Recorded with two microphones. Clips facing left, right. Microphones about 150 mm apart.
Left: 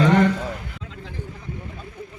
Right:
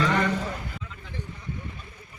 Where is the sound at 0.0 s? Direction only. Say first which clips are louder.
Left 7 dB; 50° left (ahead or behind).